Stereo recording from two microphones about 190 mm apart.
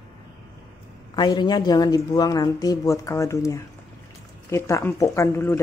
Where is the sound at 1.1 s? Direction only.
20° left (ahead or behind).